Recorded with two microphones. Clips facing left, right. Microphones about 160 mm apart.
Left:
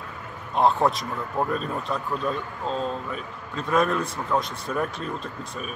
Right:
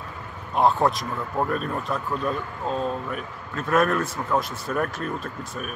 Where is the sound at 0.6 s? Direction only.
Centre (ahead or behind).